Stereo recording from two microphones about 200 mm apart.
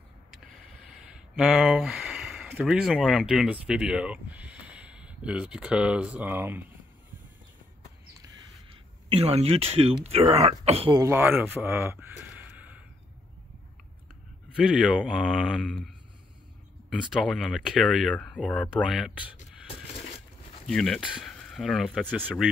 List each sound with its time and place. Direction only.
0.8 s a sound: centre (ahead or behind)
2.5 s speech: centre (ahead or behind)
8.6 s speech: 30° right (ahead or behind)
11.0 s speech: 10° right (ahead or behind)
14.5 s speech: 5° right (ahead or behind)
16.9 s speech: centre (ahead or behind)
20.6 s speech: centre (ahead or behind)